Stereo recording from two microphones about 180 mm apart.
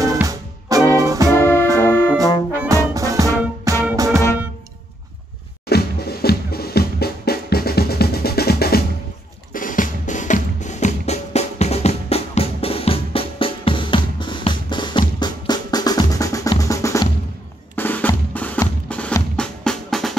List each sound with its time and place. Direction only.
0.0 s music: 20° right (ahead or behind)
1.3 s music: 15° left (ahead or behind)
2.5 s brass instrument: 10° right (ahead or behind)
2.9 s music: 20° right (ahead or behind)
5.7 s music: 60° left (ahead or behind)
9.5 s music: 50° left (ahead or behind); by 17.1 s 15° left (ahead or behind)
17.7 s drum: 10° left (ahead or behind)